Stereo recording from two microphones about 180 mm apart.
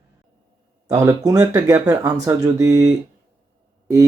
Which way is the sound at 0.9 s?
15° right (ahead or behind).